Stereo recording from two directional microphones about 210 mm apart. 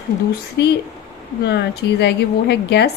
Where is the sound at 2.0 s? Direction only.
55° left (ahead or behind).